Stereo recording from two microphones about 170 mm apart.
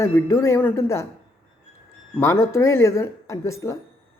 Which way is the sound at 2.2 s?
15° left (ahead or behind).